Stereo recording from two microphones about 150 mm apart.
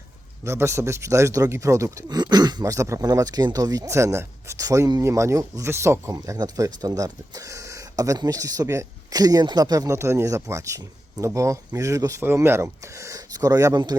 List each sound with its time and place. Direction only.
0.4 s speech: 20° right (ahead or behind)